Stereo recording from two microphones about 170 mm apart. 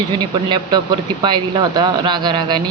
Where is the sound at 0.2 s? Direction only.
25° right (ahead or behind).